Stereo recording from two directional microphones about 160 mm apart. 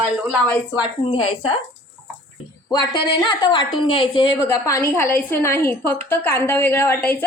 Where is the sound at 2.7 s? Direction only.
25° left (ahead or behind).